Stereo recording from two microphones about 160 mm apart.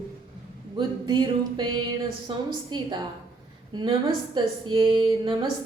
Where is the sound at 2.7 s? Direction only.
25° right (ahead or behind).